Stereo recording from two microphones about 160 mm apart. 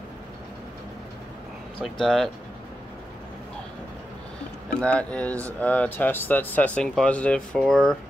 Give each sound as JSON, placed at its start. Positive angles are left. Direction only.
{"t": 2.0, "sound": "speech", "side_deg": 0}
{"t": 4.7, "sound": "speech", "side_deg": 10}